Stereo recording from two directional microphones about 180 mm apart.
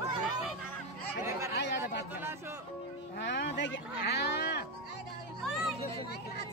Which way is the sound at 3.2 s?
80° left.